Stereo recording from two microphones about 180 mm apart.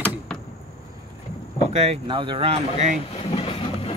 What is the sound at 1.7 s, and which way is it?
Speech, 35° right (ahead or behind).